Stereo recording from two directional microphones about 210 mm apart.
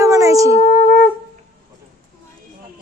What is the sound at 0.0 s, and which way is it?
Wind instrument, 15° right (ahead or behind).